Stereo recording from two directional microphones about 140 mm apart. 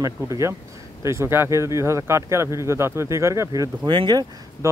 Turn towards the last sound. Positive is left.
turn(degrees=-30)  # may be behind; listen again after turning